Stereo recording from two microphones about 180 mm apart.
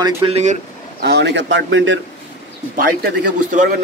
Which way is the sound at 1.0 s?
65° right (ahead or behind).